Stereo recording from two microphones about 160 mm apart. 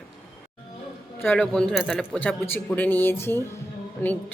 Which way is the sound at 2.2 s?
10° left (ahead or behind).